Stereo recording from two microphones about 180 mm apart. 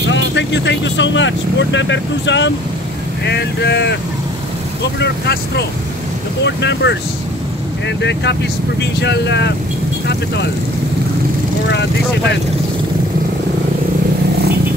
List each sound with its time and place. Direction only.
0.1 s speech: 80° left
3.3 s speech: 65° left (ahead or behind)
5.0 s speech: 65° left (ahead or behind)
8.0 s speech: 75° left (ahead or behind)